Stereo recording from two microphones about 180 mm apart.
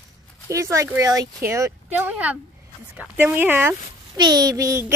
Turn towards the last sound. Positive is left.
turn(degrees=-15)  # may be behind; listen again after turning